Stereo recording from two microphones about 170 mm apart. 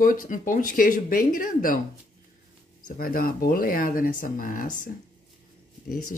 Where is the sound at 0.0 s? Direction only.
55° left (ahead or behind).